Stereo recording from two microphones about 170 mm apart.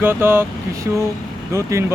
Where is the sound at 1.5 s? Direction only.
15° right (ahead or behind).